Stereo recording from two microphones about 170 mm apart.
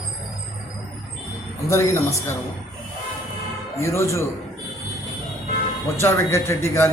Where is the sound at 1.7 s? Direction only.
15° left (ahead or behind).